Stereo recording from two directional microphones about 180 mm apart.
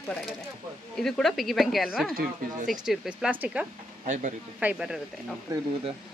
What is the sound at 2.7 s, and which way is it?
Speech, 5° right (ahead or behind).